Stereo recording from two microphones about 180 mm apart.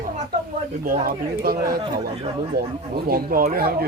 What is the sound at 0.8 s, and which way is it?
Speech, 55° right (ahead or behind).